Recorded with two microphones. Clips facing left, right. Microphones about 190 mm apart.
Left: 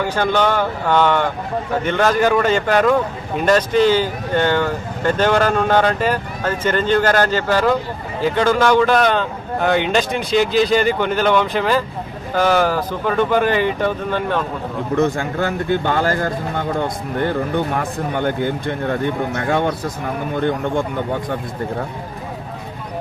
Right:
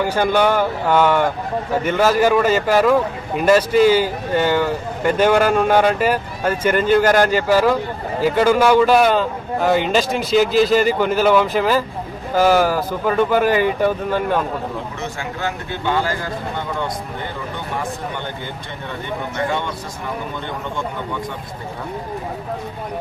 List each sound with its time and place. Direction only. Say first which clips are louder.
0.0 s speech: right 1 dB; 10° right (ahead or behind)
14.9 s speech: left 9 dB; 50° left (ahead or behind)